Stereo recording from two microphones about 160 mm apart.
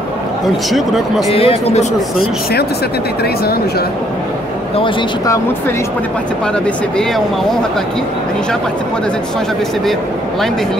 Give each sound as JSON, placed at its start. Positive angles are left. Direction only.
{"t": 0.7, "sound": "speech", "side_deg": 0}
{"t": 1.3, "sound": "speech", "side_deg": 35}